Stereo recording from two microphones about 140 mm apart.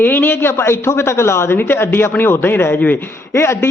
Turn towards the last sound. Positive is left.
turn(degrees=20)  # may be behind; listen again after turning